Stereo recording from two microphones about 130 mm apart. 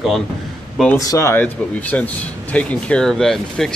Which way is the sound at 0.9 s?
25° left (ahead or behind).